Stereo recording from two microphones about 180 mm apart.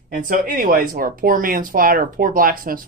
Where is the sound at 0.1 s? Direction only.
50° right (ahead or behind).